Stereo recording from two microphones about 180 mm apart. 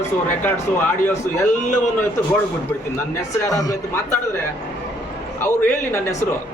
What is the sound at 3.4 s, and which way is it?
Speech, 20° left (ahead or behind).